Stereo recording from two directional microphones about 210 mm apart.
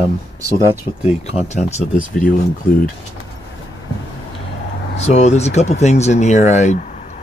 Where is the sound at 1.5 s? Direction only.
35° left (ahead or behind).